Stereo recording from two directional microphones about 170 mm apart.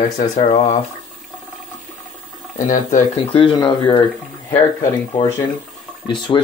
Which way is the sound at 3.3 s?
30° left (ahead or behind).